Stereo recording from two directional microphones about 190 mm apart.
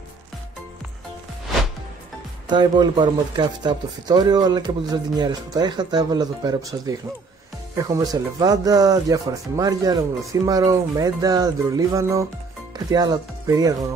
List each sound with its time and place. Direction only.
2.4 s speech: 25° right (ahead or behind)